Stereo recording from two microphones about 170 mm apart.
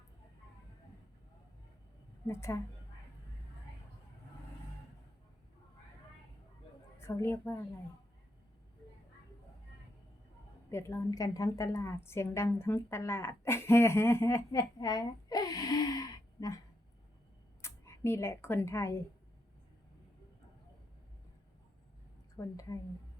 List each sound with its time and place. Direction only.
2.2 s a woman's voice: 15° left (ahead or behind)
7.0 s a woman's voice: 15° left (ahead or behind)
10.7 s a woman's voice: 15° left (ahead or behind)
17.6 s speech: 15° left (ahead or behind)
22.4 s a woman's voice: 20° left (ahead or behind)